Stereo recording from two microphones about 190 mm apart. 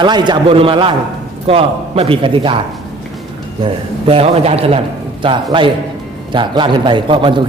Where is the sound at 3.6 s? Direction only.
30° right (ahead or behind).